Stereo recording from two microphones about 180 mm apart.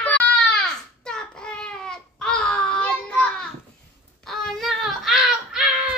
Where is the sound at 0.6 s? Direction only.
5° left (ahead or behind).